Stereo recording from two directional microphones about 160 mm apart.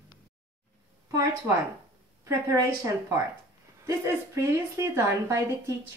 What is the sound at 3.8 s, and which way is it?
A woman's voice, 15° right (ahead or behind).